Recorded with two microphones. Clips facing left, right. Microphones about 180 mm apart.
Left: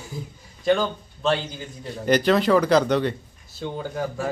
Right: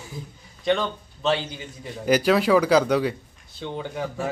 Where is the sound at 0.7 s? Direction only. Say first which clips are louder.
Left 2 dB; centre (ahead or behind).